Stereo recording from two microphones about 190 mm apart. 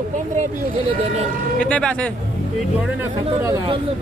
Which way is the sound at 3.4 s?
15° right (ahead or behind).